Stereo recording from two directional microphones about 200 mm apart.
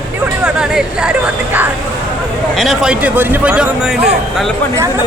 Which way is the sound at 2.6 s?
Centre (ahead or behind).